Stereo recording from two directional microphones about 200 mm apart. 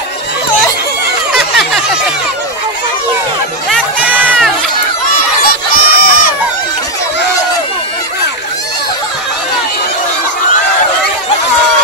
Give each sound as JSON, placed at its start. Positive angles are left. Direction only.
{"t": 4.0, "sound": "crowd", "side_deg": -10}
{"t": 5.4, "sound": "crowd", "side_deg": 45}